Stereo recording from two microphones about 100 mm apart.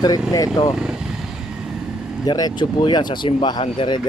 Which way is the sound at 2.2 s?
45° left (ahead or behind).